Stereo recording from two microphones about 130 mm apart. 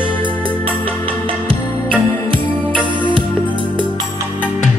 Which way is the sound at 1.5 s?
40° right (ahead or behind).